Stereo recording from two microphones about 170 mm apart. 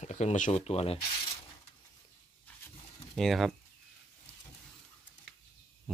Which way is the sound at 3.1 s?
Centre (ahead or behind).